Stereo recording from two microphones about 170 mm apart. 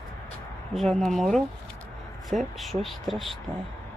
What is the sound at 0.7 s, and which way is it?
Speech, centre (ahead or behind).